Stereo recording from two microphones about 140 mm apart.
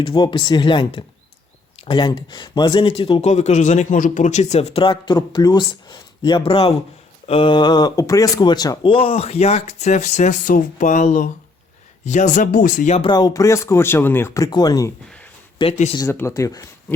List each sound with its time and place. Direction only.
0.0 s speech: 35° left (ahead or behind); by 12.9 s 75° left (ahead or behind)
13.1 s speech: 30° left (ahead or behind)
16.0 s speech: 20° left (ahead or behind)